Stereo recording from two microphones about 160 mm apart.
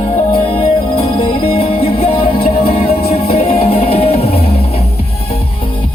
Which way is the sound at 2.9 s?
75° left (ahead or behind).